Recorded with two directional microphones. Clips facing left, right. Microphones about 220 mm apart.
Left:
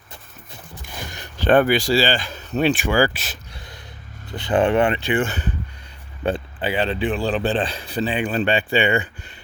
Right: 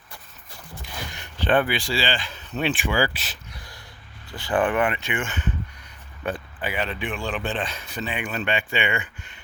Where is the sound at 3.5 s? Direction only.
25° left (ahead or behind).